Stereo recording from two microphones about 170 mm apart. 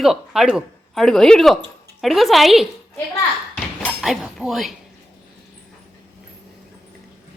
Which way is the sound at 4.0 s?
5° right (ahead or behind).